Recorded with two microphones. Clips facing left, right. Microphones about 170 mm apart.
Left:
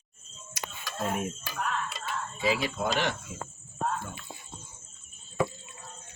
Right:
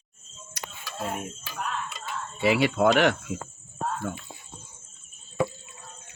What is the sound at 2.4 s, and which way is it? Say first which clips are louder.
Speech: right 8 dB; 70° right (ahead or behind).